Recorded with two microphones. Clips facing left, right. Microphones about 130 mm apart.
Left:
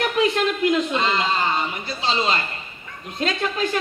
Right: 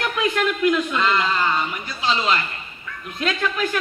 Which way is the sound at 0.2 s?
30° left (ahead or behind).